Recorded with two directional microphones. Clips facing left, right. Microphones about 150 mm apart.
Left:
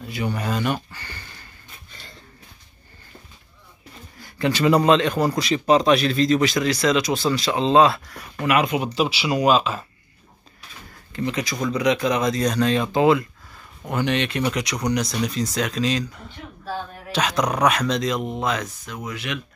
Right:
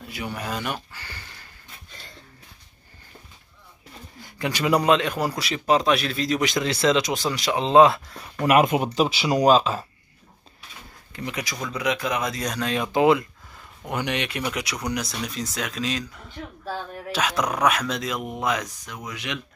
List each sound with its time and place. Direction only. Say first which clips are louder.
0.0 s speech: left 5 dB; 5° right (ahead or behind)
0.9 s a sound: left 2 dB; 5° right (ahead or behind)
4.2 s a man's voice: left 5 dB; 15° right (ahead or behind)
6.4 s speech: left 2 dB; 20° right (ahead or behind)
8.4 s speech: right 2 dB; 45° right (ahead or behind)
11.1 s a man's voice: left 6 dB; 10° right (ahead or behind)